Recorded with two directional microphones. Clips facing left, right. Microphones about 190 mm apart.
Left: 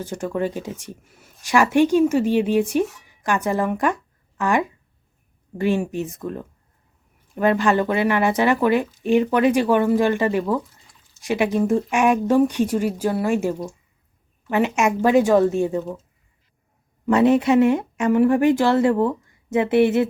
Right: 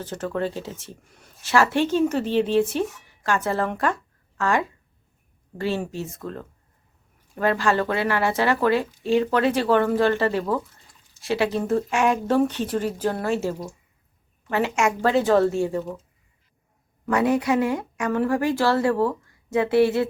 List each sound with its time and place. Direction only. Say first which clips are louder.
0.0 s speech: left 2 dB; 10° left (ahead or behind)
17.1 s a woman's voice: left 5 dB; 25° left (ahead or behind)